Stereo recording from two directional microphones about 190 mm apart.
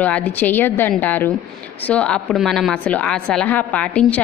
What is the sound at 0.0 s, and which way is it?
A woman's voice, 10° left (ahead or behind).